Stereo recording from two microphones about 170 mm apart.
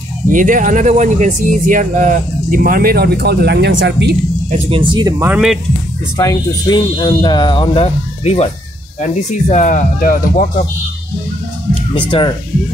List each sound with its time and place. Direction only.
0.3 s speech: 50° right (ahead or behind); by 4.2 s 80° right
4.5 s speech: 35° right (ahead or behind)
5.2 s speech: 5° right (ahead or behind)
6.1 s speech: 25° left (ahead or behind)
9.5 s speech: 45° left (ahead or behind)
11.7 s speech: 30° left (ahead or behind)